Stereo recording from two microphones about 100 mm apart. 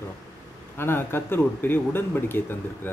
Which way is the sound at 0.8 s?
25° left (ahead or behind).